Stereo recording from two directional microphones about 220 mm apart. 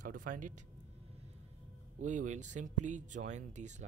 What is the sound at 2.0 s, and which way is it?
Speech, 35° right (ahead or behind).